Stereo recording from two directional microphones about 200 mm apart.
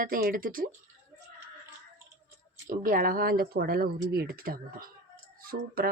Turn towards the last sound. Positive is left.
turn(degrees=-50)  # may be behind; listen again after turning